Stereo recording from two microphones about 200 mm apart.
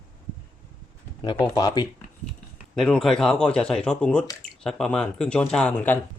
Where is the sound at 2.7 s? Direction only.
Centre (ahead or behind).